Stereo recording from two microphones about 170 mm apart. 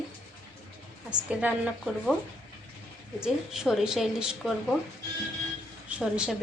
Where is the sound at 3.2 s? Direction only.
5° right (ahead or behind).